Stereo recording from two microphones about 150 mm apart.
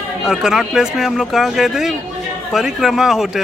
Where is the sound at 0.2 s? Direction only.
Centre (ahead or behind).